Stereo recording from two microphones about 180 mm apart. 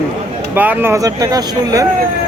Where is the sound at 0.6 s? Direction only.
10° right (ahead or behind).